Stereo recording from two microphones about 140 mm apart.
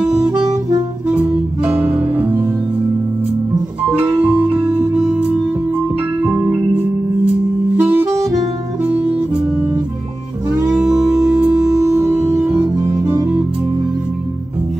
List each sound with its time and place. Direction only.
1.1 s music: 10° right (ahead or behind)
4.0 s music: 10° right (ahead or behind)
6.4 s music: 10° right (ahead or behind)
10.7 s music: 5° right (ahead or behind)
12.6 s music: 25° right (ahead or behind)